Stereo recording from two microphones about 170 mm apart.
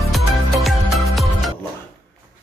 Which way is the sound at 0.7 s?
Centre (ahead or behind).